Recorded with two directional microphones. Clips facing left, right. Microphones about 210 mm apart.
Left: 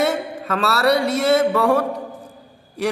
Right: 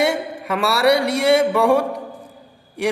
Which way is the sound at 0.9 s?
80° right.